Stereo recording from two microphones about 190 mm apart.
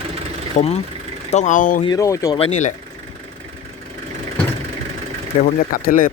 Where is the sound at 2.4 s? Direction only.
35° left (ahead or behind).